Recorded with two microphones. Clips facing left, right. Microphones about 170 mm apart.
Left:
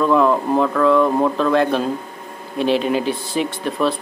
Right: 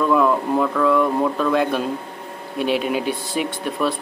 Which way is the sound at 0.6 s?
5° right (ahead or behind).